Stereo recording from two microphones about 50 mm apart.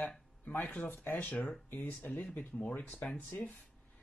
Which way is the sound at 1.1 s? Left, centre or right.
Left.